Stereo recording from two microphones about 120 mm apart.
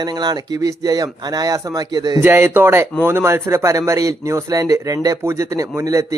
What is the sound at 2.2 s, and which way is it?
Speech, 15° right (ahead or behind).